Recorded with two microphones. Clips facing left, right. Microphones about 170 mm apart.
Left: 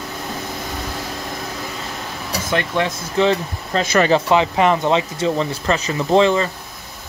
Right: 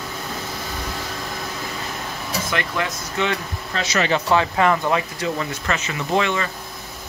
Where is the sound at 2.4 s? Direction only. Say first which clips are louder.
Left 6 dB; 25° left (ahead or behind).